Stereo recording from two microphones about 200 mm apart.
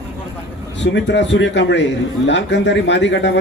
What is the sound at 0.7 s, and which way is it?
A man's voice, 65° left (ahead or behind).